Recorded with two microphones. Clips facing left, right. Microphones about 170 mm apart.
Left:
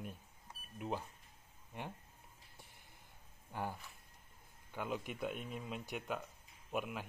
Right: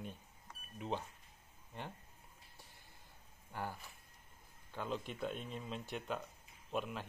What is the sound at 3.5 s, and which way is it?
Speech, 15° left (ahead or behind).